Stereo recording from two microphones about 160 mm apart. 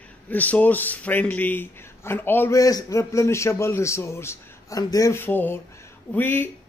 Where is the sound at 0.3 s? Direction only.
10° left (ahead or behind).